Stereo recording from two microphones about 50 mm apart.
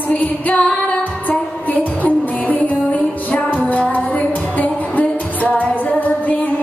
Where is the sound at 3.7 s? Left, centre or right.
Left.